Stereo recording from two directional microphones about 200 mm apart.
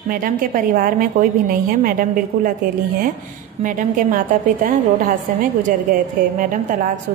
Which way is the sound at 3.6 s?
40° right (ahead or behind).